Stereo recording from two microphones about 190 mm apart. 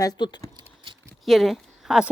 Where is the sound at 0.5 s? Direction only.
25° right (ahead or behind).